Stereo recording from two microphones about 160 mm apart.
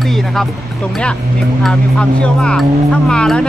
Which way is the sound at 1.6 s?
5° left (ahead or behind).